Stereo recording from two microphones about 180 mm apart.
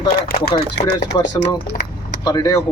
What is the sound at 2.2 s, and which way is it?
Speech, 20° left (ahead or behind).